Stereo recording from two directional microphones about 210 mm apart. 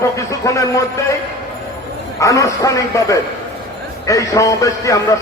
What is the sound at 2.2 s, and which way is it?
A man's voice, 15° left (ahead or behind).